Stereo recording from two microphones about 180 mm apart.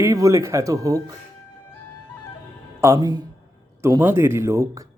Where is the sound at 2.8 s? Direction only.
20° right (ahead or behind).